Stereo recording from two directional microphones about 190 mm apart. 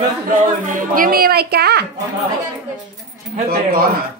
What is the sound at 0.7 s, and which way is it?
A woman's voice, 45° right (ahead or behind).